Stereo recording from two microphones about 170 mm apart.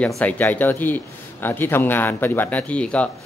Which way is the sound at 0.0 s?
10° left (ahead or behind).